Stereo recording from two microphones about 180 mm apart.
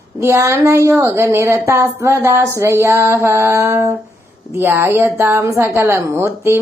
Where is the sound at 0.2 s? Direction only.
15° right (ahead or behind).